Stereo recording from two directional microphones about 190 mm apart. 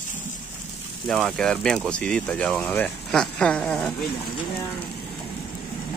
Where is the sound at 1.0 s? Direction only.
5° left (ahead or behind).